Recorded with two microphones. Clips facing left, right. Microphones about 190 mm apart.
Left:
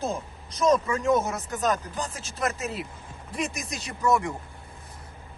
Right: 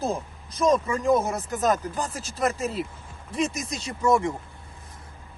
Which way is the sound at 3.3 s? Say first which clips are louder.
Right 4 dB; 25° right (ahead or behind).